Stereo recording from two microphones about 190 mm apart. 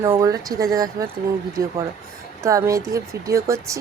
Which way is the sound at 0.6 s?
20° right (ahead or behind).